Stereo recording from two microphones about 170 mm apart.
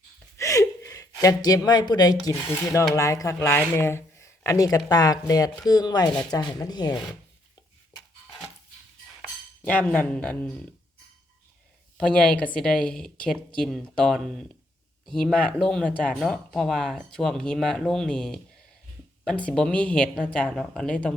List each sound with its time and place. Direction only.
0.3 s speech: 20° left (ahead or behind)
9.6 s speech: 10° left (ahead or behind)
11.9 s speech: 5° left (ahead or behind)